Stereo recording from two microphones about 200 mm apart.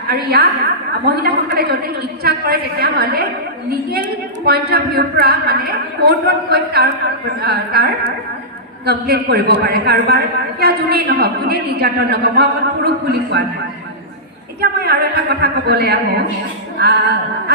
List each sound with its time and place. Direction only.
0.1 s a man's voice: 50° right (ahead or behind)
4.4 s a man's voice: 50° right (ahead or behind)
14.6 s a man's voice: 55° right (ahead or behind)